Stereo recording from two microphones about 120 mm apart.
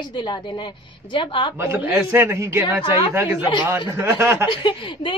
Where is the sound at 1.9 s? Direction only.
20° right (ahead or behind).